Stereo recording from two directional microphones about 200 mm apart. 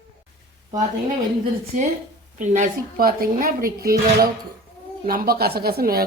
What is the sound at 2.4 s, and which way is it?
Speech, 40° right (ahead or behind).